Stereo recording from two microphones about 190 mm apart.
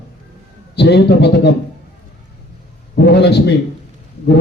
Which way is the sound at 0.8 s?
60° left (ahead or behind).